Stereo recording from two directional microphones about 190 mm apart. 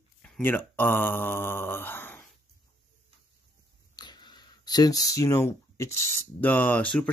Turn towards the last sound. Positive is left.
turn(degrees=5)  # may be behind; listen again after turning